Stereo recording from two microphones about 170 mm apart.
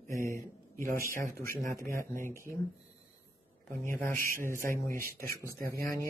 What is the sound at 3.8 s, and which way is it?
Speech, 10° left (ahead or behind).